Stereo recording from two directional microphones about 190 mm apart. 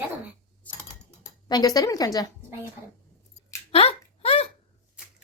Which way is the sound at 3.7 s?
30° left (ahead or behind).